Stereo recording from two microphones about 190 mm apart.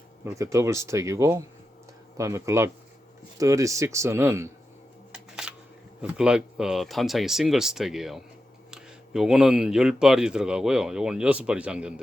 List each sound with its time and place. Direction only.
0.3 s speech: 15° right (ahead or behind)
5.1 s camera: 5° right (ahead or behind)
6.0 s speech: 5° right (ahead or behind)